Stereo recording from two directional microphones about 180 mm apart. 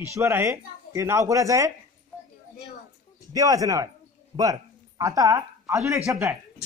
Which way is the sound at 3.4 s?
20° right (ahead or behind).